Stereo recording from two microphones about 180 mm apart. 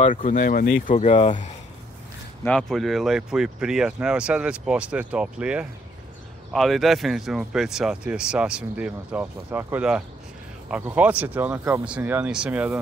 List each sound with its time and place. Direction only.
0.1 s speech: 45° left (ahead or behind)
2.4 s speech: 5° left (ahead or behind)